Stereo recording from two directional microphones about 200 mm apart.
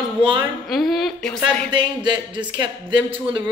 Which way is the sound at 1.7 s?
20° right (ahead or behind).